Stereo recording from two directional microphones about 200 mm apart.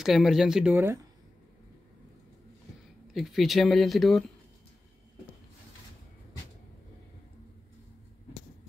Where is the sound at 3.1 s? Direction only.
Centre (ahead or behind).